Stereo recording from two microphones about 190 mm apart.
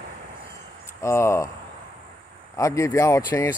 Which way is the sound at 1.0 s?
15° left (ahead or behind).